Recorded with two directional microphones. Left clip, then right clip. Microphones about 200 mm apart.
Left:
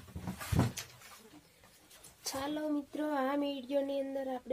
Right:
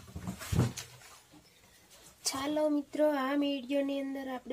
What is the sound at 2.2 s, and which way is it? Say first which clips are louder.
Speech: right 6 dB; 40° right (ahead or behind).